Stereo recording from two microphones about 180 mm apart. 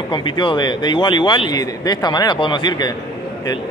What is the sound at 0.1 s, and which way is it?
A man's voice, 25° left (ahead or behind).